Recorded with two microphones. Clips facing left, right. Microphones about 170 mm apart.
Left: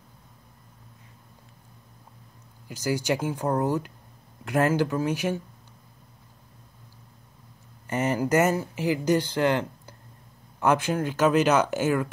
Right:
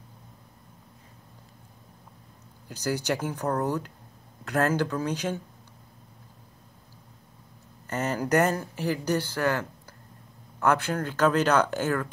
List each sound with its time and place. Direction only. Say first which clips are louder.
2.7 s speech: left 2 dB; 10° left (ahead or behind)
7.8 s speech: left 3 dB; 10° left (ahead or behind)